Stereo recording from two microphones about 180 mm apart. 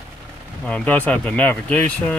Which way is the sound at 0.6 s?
5° left (ahead or behind).